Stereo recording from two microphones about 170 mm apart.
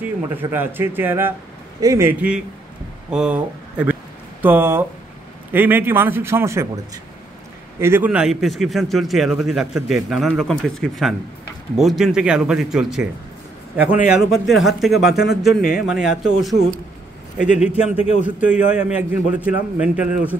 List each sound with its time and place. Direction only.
0.0 s a man's voice: 10° right (ahead or behind)
3.1 s a sound: 5° right (ahead or behind)
5.5 s a man's voice: 10° right (ahead or behind)
7.8 s a man's voice: 10° right (ahead or behind)
15.1 s speech: 75° left (ahead or behind)
15.9 s a man's voice: 5° right (ahead or behind)
17.7 s speech: 35° left (ahead or behind)
18.2 s a man's voice: 10° right (ahead or behind)